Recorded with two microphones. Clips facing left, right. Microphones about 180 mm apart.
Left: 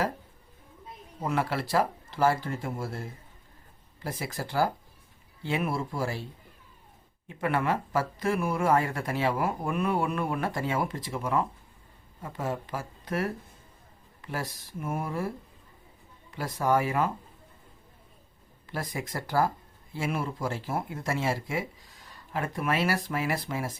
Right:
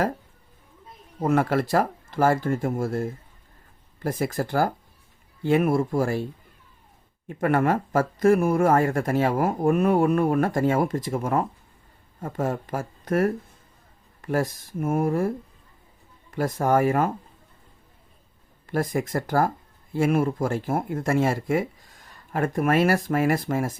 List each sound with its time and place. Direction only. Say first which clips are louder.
1.2 s speech: right 8 dB; 50° right (ahead or behind)
7.3 s speech: right 6 dB; 50° right (ahead or behind)
16.3 s speech: right 5 dB; 50° right (ahead or behind)
18.6 s speech: right 10 dB; 50° right (ahead or behind)